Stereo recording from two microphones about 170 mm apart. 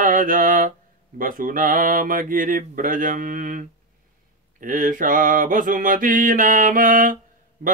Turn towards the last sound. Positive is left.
turn(degrees=-55)  # may be behind; listen again after turning